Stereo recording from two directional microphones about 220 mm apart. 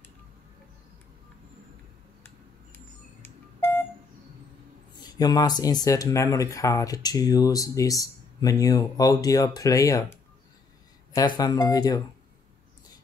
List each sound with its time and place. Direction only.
3.2 s music: 10° left (ahead or behind)
4.9 s speech: 20° left (ahead or behind)
11.1 s speech: 20° left (ahead or behind)